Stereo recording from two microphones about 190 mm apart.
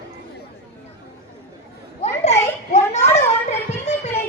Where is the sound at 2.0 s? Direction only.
35° left (ahead or behind).